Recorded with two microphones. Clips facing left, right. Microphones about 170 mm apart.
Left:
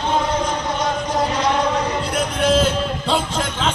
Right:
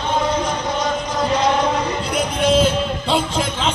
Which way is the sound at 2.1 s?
Centre (ahead or behind).